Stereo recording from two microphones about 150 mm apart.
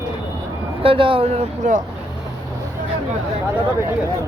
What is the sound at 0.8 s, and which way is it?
Speech, 35° right (ahead or behind).